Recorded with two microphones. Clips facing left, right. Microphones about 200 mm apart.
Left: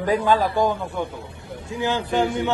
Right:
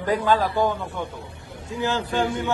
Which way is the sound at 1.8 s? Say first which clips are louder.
Left 2 dB; 15° left (ahead or behind).